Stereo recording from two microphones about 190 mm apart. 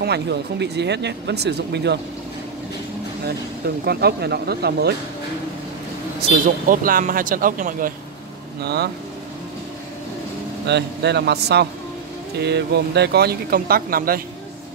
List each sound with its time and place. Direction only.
0.0 s speech: 60° right (ahead or behind)
3.8 s speech: 55° right (ahead or behind)
6.7 s speech: 45° right (ahead or behind)
8.6 s speech: 60° right (ahead or behind)
10.7 s speech: 60° right (ahead or behind)